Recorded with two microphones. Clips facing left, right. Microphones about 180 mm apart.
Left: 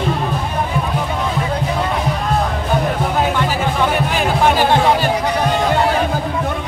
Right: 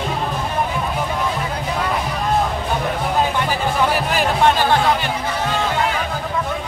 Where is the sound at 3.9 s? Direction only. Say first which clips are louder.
Left 2 dB; centre (ahead or behind).